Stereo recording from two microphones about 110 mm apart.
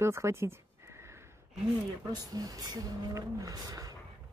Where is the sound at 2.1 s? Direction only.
35° right (ahead or behind).